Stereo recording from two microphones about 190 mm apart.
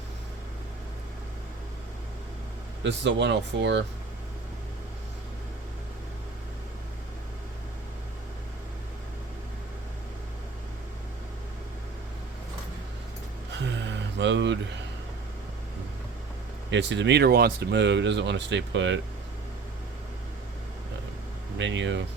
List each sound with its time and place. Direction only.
2.8 s speech: 70° right (ahead or behind)
14.2 s a sound: 70° right (ahead or behind)
16.7 s speech: 70° right (ahead or behind)
21.6 s speech: 70° right (ahead or behind)